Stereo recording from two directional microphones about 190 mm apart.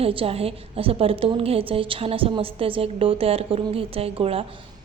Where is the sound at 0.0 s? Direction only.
30° right (ahead or behind).